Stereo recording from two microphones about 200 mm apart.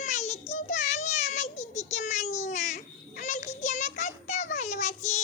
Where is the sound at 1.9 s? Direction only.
35° left (ahead or behind).